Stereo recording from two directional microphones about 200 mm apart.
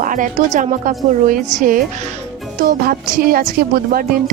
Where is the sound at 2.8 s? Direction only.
50° right (ahead or behind).